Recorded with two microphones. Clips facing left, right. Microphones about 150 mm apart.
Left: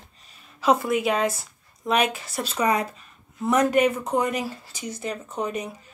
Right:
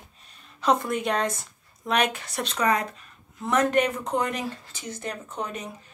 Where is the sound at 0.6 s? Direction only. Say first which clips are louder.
Left 3 dB; 5° left (ahead or behind).